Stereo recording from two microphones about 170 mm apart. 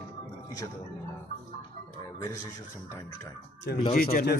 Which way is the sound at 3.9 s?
55° left (ahead or behind).